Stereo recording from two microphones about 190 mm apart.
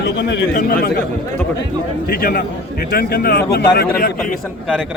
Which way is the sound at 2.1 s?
50° left (ahead or behind).